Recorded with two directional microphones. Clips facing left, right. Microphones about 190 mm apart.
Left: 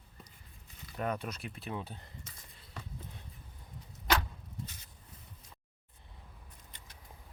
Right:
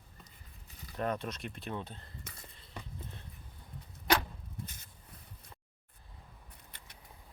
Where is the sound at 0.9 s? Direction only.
10° left (ahead or behind).